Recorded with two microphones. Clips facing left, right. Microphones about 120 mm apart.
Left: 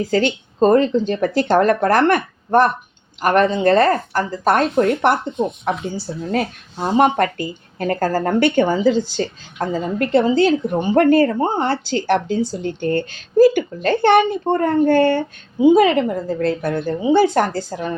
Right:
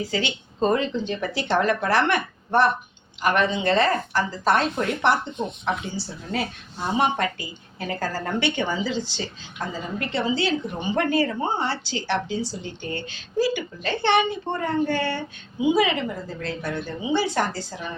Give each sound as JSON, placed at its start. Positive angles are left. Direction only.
{"t": 0.0, "sound": "speech", "side_deg": 45}